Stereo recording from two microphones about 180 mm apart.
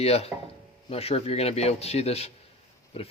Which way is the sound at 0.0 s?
35° left (ahead or behind).